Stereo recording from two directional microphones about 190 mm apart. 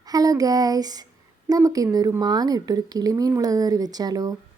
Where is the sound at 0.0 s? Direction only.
20° right (ahead or behind).